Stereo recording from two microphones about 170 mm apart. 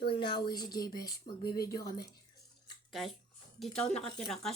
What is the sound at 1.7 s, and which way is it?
Speech, 65° left (ahead or behind).